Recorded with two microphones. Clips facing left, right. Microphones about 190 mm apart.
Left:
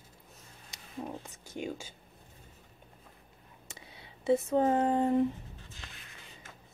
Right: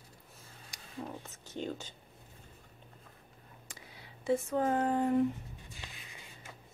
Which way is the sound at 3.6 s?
25° left (ahead or behind).